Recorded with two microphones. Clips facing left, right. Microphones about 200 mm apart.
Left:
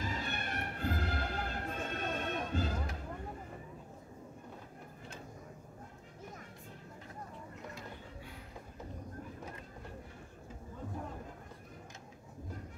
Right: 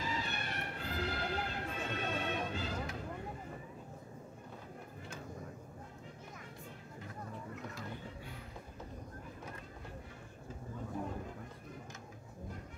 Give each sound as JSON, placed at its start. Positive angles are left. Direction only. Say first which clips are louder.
{"t": 0.0, "sound": "music", "louder": "left 1 dB", "side_deg": 50}